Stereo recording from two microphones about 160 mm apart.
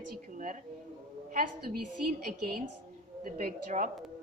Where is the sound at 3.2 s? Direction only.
65° right (ahead or behind).